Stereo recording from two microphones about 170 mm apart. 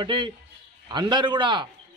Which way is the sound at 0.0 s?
30° right (ahead or behind).